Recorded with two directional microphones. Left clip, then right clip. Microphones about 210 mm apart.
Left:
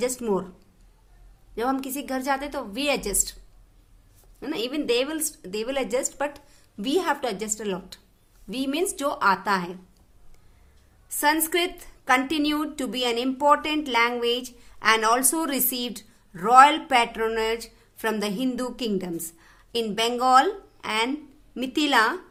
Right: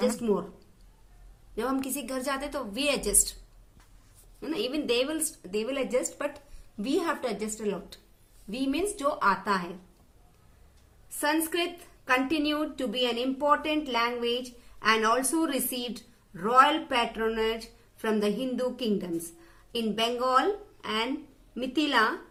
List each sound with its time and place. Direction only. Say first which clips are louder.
0.0 s a woman's voice: left 2 dB; 40° left (ahead or behind)
1.5 s a woman's voice: left 4 dB; 40° left (ahead or behind)
4.4 s a woman's voice: left 2 dB; 45° left (ahead or behind)
11.2 s a woman's voice: left 5 dB; 40° left (ahead or behind)